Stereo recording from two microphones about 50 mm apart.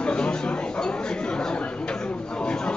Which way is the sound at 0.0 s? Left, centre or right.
Centre.